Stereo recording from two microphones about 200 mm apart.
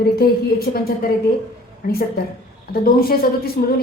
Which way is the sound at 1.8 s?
50° left (ahead or behind).